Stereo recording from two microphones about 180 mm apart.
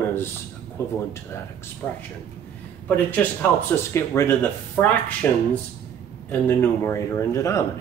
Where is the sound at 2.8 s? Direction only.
10° left (ahead or behind).